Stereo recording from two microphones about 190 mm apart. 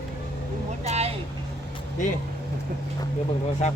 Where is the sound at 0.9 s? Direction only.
35° right (ahead or behind).